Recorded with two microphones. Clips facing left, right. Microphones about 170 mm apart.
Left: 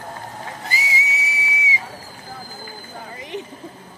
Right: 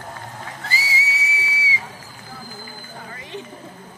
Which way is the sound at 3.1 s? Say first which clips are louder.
Left 4 dB; 15° left (ahead or behind).